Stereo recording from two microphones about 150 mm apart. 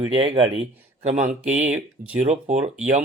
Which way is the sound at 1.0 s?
50° right (ahead or behind).